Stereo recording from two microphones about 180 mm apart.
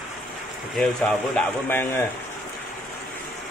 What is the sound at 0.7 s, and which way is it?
Speech, 5° left (ahead or behind).